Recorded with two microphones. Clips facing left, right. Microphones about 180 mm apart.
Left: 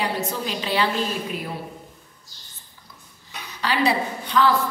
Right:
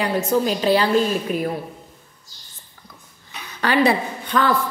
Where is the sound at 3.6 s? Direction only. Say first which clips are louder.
Right 4 dB; 50° right (ahead or behind).